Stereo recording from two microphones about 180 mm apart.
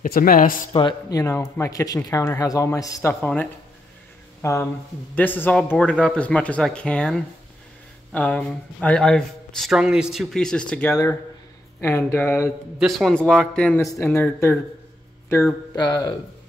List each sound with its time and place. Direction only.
0.0 s speech: 55° left (ahead or behind)
0.7 s speech: 25° left (ahead or behind)
12.7 s speech: centre (ahead or behind); by 16.2 s 20° left (ahead or behind)